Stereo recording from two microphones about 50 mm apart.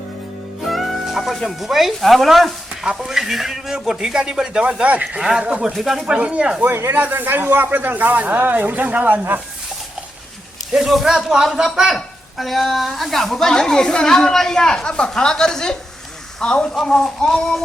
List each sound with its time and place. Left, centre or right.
0.6 s speech: centre
4.8 s speech: right
5.7 s speech: centre
6.1 s speech: right
6.6 s speech: right
6.9 s speech: right
7.7 s speech: right
10.7 s speech: centre
12.4 s speech: centre